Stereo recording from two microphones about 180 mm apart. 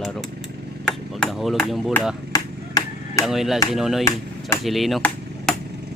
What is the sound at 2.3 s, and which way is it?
Chop, 20° left (ahead or behind).